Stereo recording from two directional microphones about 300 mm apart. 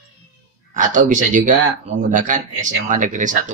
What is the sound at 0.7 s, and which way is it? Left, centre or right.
Speech, right.